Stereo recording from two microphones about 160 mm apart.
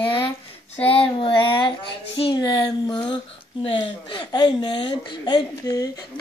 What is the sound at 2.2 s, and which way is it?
Speech, 30° left (ahead or behind).